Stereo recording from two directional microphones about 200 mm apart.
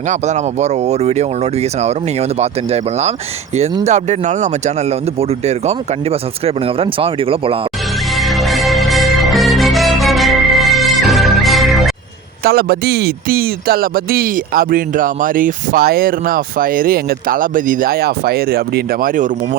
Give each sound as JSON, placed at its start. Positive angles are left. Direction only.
{"t": 0.1, "sound": "speech", "side_deg": -35}
{"t": 2.4, "sound": "speech", "side_deg": -35}
{"t": 8.1, "sound": "music", "side_deg": 0}
{"t": 12.4, "sound": "speech", "side_deg": -50}